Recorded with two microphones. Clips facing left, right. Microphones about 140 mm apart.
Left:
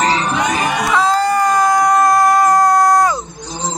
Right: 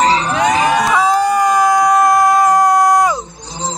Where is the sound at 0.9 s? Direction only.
15° right (ahead or behind).